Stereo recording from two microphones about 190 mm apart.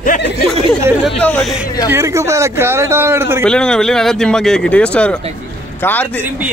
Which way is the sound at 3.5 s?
5° left (ahead or behind).